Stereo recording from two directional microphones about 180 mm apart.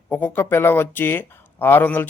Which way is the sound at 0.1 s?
10° left (ahead or behind).